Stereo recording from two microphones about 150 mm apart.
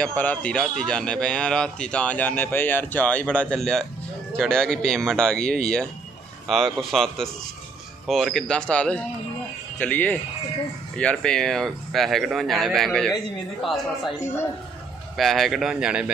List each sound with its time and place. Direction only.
0.0 s a man's voice: 10° left (ahead or behind)
14.2 s a man's voice: 15° left (ahead or behind)
15.1 s speech: centre (ahead or behind)